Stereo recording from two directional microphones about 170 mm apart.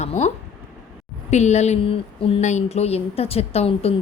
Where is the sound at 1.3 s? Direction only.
40° left (ahead or behind).